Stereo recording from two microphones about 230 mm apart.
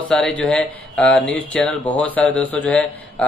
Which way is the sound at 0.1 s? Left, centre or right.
Centre.